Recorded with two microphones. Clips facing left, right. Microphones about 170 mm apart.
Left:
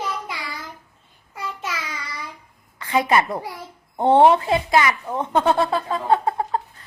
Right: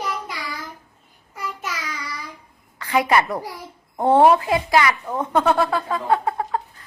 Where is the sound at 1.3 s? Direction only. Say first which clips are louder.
Even; 25° left (ahead or behind).